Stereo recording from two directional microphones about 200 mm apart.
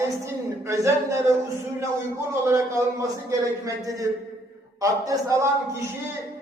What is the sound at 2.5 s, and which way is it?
A man's voice, 15° right (ahead or behind).